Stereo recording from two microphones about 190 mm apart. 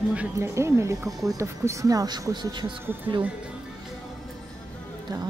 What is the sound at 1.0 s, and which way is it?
Speech, centre (ahead or behind).